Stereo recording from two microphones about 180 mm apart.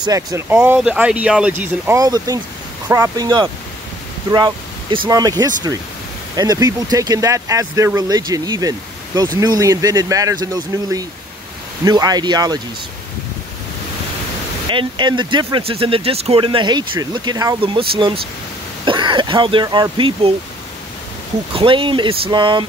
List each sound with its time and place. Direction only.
0.0 s speech: 20° right (ahead or behind)
0.6 s speech: 10° right (ahead or behind)
4.9 s speech: 25° right (ahead or behind)
14.7 s speech: 25° right (ahead or behind)
21.5 s speech: 30° right (ahead or behind)